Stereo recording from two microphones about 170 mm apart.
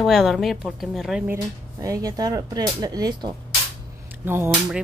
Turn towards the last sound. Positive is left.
turn(degrees=-10)  # may be behind; listen again after turning